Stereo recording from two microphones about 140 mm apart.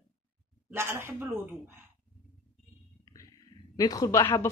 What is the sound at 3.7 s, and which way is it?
Speech, 25° left (ahead or behind).